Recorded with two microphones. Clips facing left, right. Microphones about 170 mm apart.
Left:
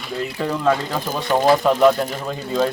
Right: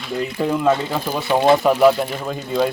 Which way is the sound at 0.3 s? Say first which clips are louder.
Right 2 dB; 10° right (ahead or behind).